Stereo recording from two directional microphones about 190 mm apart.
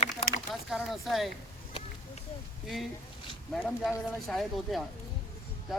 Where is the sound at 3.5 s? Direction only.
5° left (ahead or behind).